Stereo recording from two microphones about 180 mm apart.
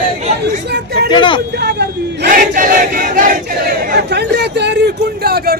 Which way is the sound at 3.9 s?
65° right (ahead or behind).